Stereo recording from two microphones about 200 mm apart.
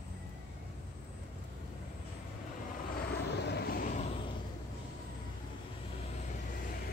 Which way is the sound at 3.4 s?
55° left (ahead or behind).